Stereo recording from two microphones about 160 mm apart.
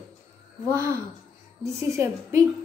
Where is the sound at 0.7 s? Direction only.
20° right (ahead or behind).